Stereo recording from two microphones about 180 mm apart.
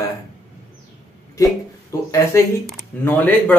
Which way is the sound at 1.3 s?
15° left (ahead or behind).